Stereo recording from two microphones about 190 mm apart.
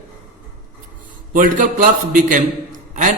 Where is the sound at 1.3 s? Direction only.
45° right (ahead or behind).